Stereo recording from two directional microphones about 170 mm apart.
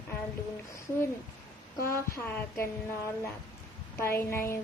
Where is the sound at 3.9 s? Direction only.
15° left (ahead or behind).